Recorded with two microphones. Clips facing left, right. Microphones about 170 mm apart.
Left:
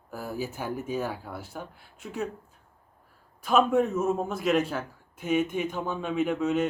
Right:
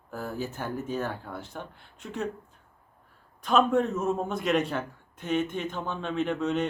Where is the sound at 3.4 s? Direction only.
5° left (ahead or behind).